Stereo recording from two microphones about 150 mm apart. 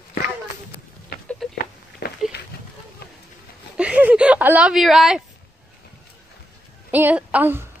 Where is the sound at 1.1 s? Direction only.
90° left.